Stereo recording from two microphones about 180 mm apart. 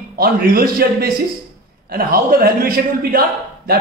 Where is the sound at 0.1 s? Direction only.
55° right (ahead or behind).